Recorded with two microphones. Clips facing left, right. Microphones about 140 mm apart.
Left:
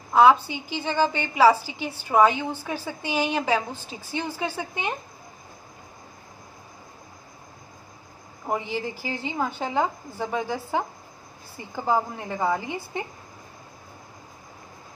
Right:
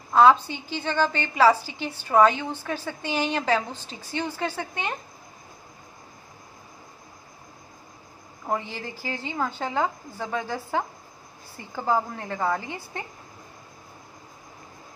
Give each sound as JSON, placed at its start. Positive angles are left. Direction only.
{"t": 0.1, "sound": "a woman's voice", "side_deg": 10}
{"t": 8.5, "sound": "a woman's voice", "side_deg": 15}